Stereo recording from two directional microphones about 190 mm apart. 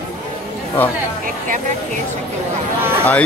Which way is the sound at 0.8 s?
10° left (ahead or behind).